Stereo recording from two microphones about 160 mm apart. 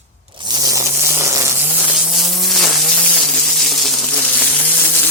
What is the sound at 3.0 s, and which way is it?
Insect, 5° left (ahead or behind).